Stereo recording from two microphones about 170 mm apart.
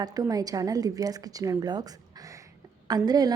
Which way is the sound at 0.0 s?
20° right (ahead or behind).